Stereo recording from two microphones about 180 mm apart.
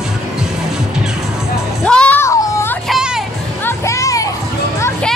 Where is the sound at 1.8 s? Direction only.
5° left (ahead or behind).